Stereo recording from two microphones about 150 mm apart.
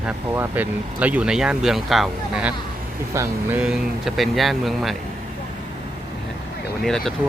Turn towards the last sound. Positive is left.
turn(degrees=5)  # may be behind; listen again after turning